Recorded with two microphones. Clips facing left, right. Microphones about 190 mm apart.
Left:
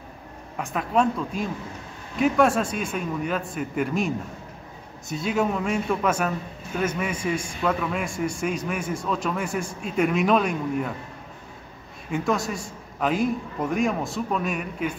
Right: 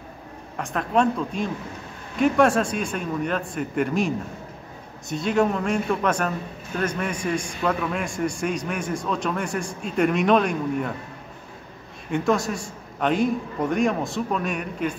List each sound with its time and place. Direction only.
0.6 s a man's voice: 5° left (ahead or behind)
12.1 s a man's voice: centre (ahead or behind)